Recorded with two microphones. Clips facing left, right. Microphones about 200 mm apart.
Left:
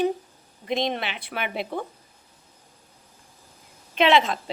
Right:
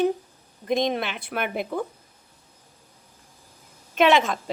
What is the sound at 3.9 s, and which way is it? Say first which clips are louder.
Speech: right 1 dB; 45° right (ahead or behind).